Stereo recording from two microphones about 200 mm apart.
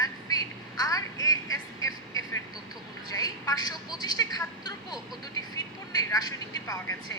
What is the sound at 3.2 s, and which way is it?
Speech, 20° left (ahead or behind).